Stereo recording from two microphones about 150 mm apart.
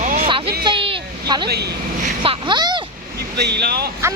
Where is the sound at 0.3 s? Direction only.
35° right (ahead or behind).